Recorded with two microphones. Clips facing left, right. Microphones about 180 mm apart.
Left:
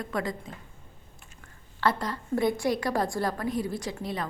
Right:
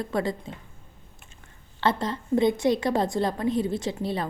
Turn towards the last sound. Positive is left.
turn(degrees=-30)  # may be behind; listen again after turning